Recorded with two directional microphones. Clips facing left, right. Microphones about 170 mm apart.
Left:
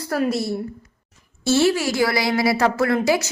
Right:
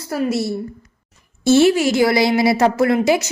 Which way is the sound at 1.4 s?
20° right (ahead or behind).